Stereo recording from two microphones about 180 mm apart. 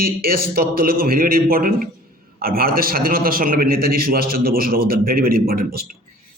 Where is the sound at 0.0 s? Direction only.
55° right (ahead or behind).